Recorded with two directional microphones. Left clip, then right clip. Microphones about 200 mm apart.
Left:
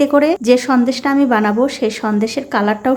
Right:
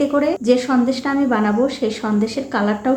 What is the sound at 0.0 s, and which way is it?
A woman's voice, 35° left (ahead or behind).